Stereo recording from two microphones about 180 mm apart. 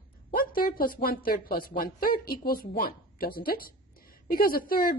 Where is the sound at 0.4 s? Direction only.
55° left (ahead or behind).